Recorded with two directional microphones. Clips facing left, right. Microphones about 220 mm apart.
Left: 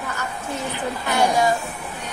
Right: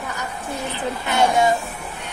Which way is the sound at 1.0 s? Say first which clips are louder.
Right 1 dB; 25° right (ahead or behind).